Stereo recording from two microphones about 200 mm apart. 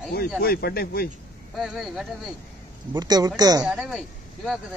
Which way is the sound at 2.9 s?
20° right (ahead or behind).